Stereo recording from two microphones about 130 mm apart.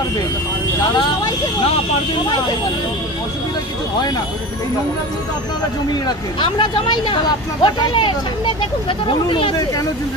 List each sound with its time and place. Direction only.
6.0 s speech: 35° left (ahead or behind)